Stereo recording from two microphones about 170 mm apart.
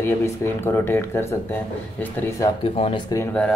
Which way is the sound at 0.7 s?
15° left (ahead or behind).